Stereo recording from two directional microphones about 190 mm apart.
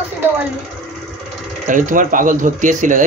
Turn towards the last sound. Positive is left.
turn(degrees=-40)  # may be behind; listen again after turning